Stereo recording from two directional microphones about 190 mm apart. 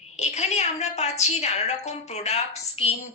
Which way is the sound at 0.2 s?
35° left (ahead or behind).